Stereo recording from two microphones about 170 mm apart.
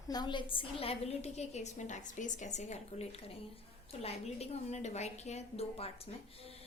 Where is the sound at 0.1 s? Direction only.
25° left (ahead or behind).